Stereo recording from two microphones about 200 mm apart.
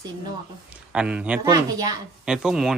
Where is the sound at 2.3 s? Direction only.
Centre (ahead or behind).